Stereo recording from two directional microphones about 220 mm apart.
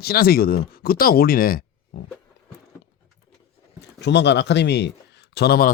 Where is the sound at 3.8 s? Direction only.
50° left (ahead or behind).